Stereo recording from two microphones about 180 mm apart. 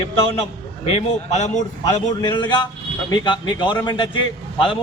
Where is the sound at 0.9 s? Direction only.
35° left (ahead or behind).